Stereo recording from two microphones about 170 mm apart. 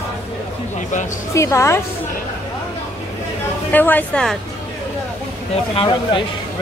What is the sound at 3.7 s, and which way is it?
Speech, 10° left (ahead or behind).